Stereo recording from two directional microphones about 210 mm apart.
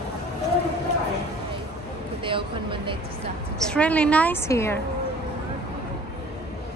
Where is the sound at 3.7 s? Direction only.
5° left (ahead or behind).